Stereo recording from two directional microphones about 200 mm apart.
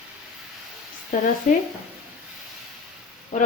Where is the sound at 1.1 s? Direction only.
45° left (ahead or behind).